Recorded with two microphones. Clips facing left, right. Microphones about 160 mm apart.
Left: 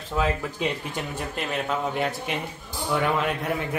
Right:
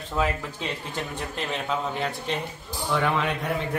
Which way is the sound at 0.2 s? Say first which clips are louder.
Left 1 dB; 5° left (ahead or behind).